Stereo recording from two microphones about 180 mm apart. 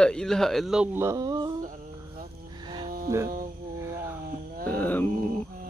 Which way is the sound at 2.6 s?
25° right (ahead or behind).